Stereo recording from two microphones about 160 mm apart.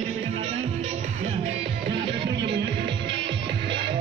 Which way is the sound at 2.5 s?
90° right.